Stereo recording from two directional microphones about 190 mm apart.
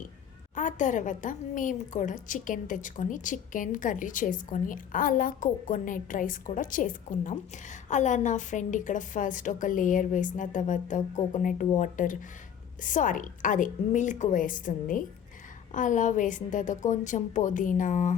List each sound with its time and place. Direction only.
0.5 s a woman's voice: 40° left (ahead or behind)